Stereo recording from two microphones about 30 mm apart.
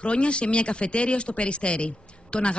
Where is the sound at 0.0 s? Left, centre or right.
Left.